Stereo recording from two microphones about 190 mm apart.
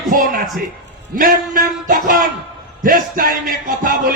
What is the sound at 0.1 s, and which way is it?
A man's voice, 50° right (ahead or behind).